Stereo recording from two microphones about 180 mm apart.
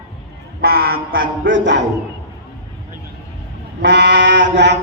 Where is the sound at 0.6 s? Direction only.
55° right (ahead or behind).